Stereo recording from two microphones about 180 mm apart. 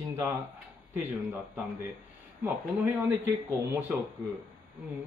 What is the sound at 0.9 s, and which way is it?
Speech, 10° right (ahead or behind).